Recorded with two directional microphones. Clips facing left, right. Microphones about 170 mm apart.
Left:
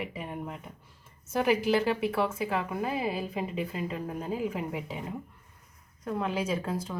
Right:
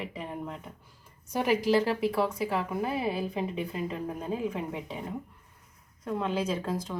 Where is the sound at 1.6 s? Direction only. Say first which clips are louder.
Right 1 dB; 35° right (ahead or behind).